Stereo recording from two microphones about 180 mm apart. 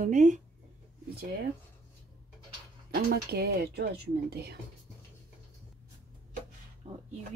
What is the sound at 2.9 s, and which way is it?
Speech, 60° right (ahead or behind).